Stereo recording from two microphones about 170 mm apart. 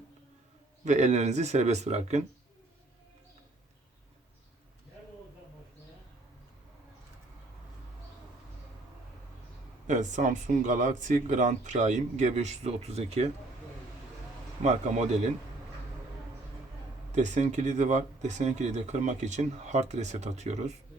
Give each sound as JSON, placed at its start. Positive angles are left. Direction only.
{"t": 0.9, "sound": "speech", "side_deg": -40}
{"t": 9.8, "sound": "speech", "side_deg": -45}
{"t": 14.6, "sound": "speech", "side_deg": -45}
{"t": 17.2, "sound": "speech", "side_deg": -45}